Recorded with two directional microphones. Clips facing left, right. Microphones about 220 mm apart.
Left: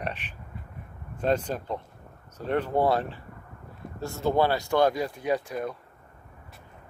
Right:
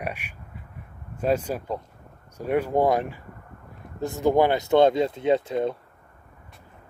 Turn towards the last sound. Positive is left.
turn(degrees=-25)  # may be behind; listen again after turning